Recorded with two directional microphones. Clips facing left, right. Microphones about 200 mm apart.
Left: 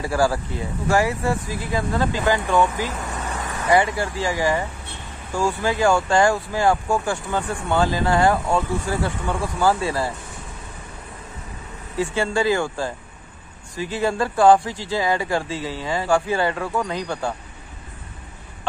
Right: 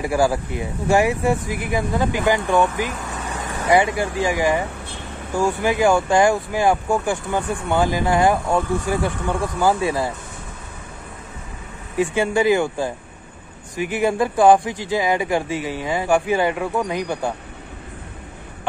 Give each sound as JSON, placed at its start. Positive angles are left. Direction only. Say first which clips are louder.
{"t": 0.0, "sound": "speech", "louder": "right 2 dB", "side_deg": -15}
{"t": 12.0, "sound": "speech", "louder": "right 3 dB", "side_deg": -15}